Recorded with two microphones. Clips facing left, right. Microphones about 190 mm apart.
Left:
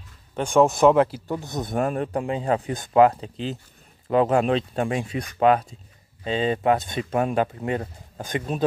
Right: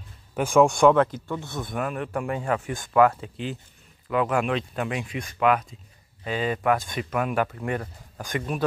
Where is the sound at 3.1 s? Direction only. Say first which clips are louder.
Left 2 dB; 35° left (ahead or behind).